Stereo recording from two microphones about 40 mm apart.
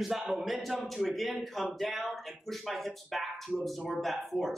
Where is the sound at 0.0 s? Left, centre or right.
Centre.